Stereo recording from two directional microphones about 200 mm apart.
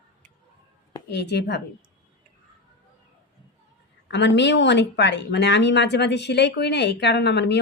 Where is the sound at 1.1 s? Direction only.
55° left (ahead or behind).